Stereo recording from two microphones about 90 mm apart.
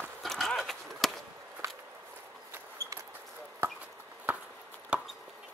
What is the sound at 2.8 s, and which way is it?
Basketball bounce, 35° right (ahead or behind).